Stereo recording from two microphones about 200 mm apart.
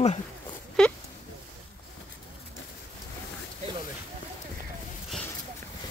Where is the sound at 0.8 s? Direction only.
5° left (ahead or behind).